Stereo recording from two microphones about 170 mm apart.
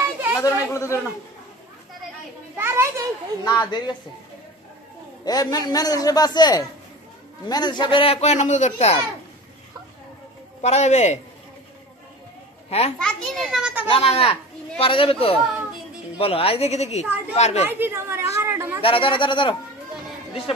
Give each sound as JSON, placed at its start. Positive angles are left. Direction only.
{"t": 0.0, "sound": "chatter", "side_deg": -10}
{"t": 0.7, "sound": "a man's voice", "side_deg": 15}
{"t": 2.5, "sound": "a woman's voice", "side_deg": -15}
{"t": 3.4, "sound": "a man's voice", "side_deg": 25}
{"t": 5.2, "sound": "a man's voice", "side_deg": 25}
{"t": 10.6, "sound": "speech", "side_deg": 40}
{"t": 12.6, "sound": "a child's voice", "side_deg": 35}
{"t": 13.0, "sound": "a child's voice", "side_deg": 0}
{"t": 13.8, "sound": "a man's voice", "side_deg": 35}
{"t": 17.6, "sound": "a woman's voice", "side_deg": -10}
{"t": 18.8, "sound": "a man's voice", "side_deg": 30}